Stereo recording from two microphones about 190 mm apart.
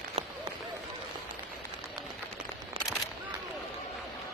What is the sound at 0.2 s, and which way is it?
Run, 35° right (ahead or behind).